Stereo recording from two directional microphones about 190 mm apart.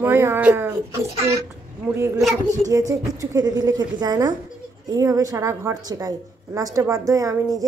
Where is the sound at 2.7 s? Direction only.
15° right (ahead or behind).